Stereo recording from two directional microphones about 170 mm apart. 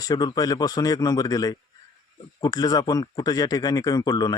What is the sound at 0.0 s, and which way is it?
Speech, 25° left (ahead or behind).